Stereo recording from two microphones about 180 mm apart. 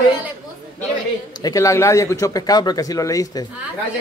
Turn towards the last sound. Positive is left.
turn(degrees=20)  # may be behind; listen again after turning